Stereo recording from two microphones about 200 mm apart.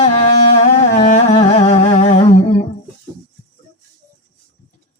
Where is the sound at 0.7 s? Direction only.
35° left (ahead or behind).